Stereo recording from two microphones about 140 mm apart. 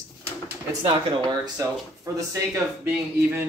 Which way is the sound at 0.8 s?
25° right (ahead or behind).